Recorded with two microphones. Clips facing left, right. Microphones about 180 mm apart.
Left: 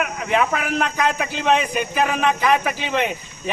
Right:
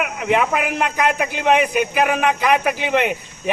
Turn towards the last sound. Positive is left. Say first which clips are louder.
# right 4 dB
turn(degrees=-15)  # may be behind; listen again after turning